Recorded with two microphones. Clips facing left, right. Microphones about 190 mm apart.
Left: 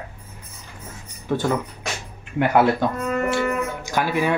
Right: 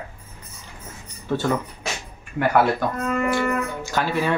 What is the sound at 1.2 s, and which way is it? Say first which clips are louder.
Speech: left 1 dB; 15° left (ahead or behind).